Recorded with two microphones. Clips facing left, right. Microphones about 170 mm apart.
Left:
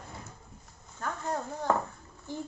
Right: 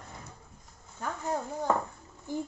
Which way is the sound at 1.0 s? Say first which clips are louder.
Right 1 dB; 10° right (ahead or behind).